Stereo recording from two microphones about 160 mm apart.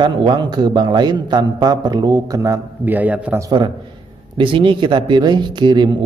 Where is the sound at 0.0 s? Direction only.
30° right (ahead or behind); by 3.4 s 10° right (ahead or behind).